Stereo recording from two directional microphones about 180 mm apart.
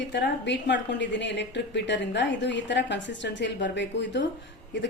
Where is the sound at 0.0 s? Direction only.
75° left (ahead or behind).